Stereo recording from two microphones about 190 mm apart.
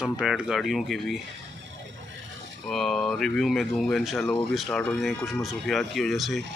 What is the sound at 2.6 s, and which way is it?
Speech, centre (ahead or behind).